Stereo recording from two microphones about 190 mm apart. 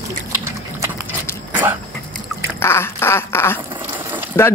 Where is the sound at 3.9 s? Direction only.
10° right (ahead or behind).